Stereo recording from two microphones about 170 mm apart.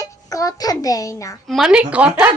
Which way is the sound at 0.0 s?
20° left (ahead or behind).